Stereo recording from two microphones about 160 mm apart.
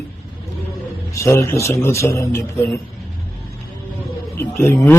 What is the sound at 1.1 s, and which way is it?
A man's voice, 15° left (ahead or behind).